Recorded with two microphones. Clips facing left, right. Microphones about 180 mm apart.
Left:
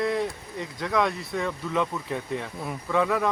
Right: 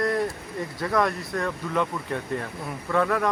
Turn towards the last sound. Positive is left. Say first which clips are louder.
# right 1 dB
turn(degrees=5)  # may be behind; listen again after turning